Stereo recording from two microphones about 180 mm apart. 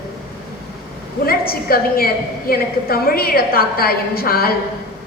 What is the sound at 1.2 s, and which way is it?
A woman's voice, 55° left (ahead or behind).